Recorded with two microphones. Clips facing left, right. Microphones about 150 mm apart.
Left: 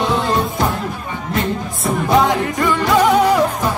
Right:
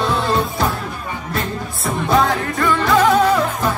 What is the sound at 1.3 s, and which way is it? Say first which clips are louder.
Music: left 5 dB; 20° left (ahead or behind).